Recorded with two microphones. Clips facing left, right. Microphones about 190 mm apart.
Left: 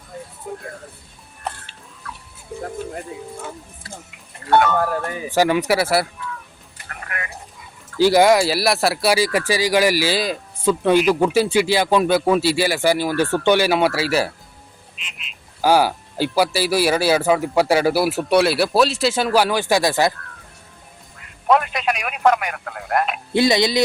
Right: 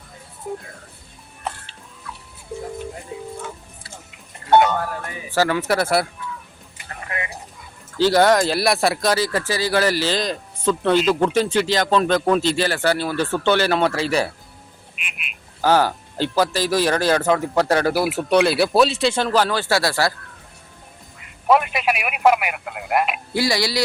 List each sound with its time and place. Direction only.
4.4 s speech: 20° right (ahead or behind)
5.3 s speech: 15° left (ahead or behind)
6.8 s a sound: 25° right (ahead or behind)
7.9 s speech: 10° left (ahead or behind)
15.6 s speech: 10° left (ahead or behind)
21.4 s speech: 5° right (ahead or behind)
23.3 s speech: 20° left (ahead or behind)